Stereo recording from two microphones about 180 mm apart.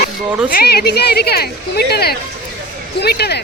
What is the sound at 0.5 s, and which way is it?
A woman's voice, 60° left (ahead or behind).